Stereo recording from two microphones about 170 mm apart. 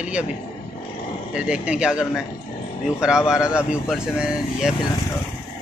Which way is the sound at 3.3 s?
5° right (ahead or behind).